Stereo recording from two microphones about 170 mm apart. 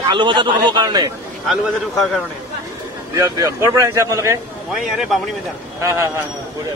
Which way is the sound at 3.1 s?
20° right (ahead or behind).